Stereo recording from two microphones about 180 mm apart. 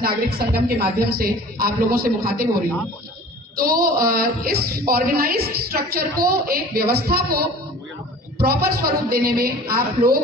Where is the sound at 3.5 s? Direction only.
55° right (ahead or behind).